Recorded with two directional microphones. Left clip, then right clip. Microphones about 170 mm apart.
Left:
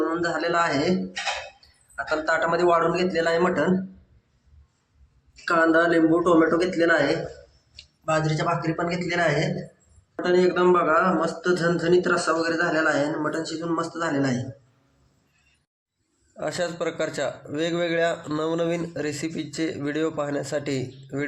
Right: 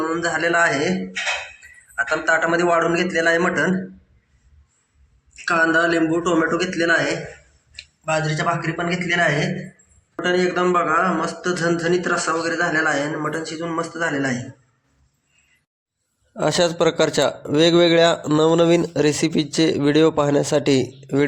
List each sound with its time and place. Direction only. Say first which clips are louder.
0.0 s speech: right 4 dB; 5° right (ahead or behind)
2.0 s speech: right 5 dB; centre (ahead or behind)
5.5 s a man's voice: right 2 dB; 5° right (ahead or behind)
16.3 s a man's voice: right 9 dB; 60° right (ahead or behind)